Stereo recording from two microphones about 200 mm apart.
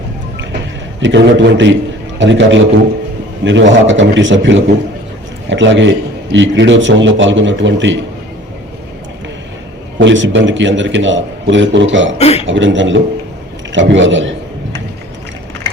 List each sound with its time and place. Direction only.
1.0 s a man's voice: 65° right (ahead or behind)
10.0 s a man's voice: 65° right (ahead or behind)
12.1 s speech: 30° left (ahead or behind)
12.5 s a man's voice: 65° right (ahead or behind)